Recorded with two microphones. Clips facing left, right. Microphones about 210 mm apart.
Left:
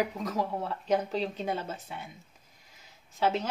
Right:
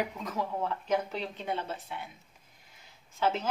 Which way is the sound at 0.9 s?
40° left (ahead or behind).